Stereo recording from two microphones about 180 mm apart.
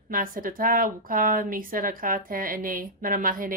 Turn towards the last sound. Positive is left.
turn(degrees=-50)  # may be behind; listen again after turning